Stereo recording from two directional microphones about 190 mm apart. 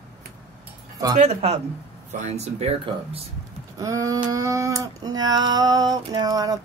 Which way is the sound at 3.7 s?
15° right (ahead or behind).